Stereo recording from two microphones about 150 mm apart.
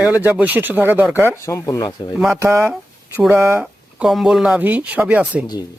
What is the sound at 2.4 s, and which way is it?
Speech, 20° right (ahead or behind).